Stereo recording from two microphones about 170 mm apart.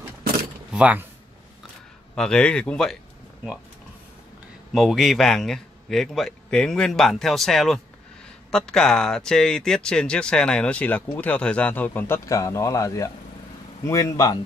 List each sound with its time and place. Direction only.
0.7 s speech: 10° right (ahead or behind)
2.1 s a man's voice: 5° left (ahead or behind)
4.7 s a man's voice: centre (ahead or behind); by 14.4 s 25° left (ahead or behind)